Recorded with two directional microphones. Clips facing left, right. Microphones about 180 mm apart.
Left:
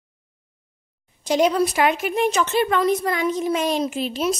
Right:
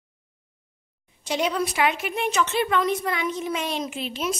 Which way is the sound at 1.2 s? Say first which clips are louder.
Left 7 dB; 40° left (ahead or behind).